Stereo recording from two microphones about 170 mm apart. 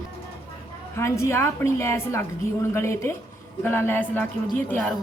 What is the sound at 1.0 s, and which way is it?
Speech, 15° left (ahead or behind).